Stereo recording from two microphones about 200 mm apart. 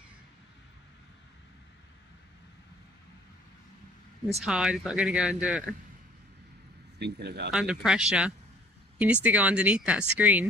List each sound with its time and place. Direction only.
4.5 s speech: 5° right (ahead or behind)
7.0 s speech: 55° right (ahead or behind)
7.5 s speech: 5° right (ahead or behind)